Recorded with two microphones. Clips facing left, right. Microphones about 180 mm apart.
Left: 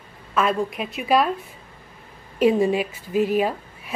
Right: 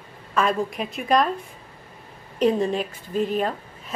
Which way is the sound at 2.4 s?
10° left (ahead or behind).